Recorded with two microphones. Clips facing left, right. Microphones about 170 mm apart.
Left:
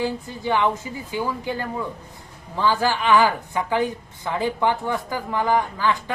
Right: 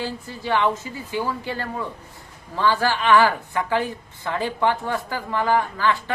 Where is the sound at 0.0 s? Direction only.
15° left (ahead or behind).